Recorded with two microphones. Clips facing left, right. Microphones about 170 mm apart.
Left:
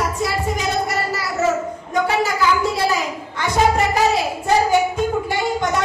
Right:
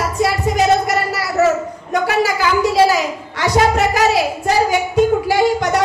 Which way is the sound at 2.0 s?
80° right.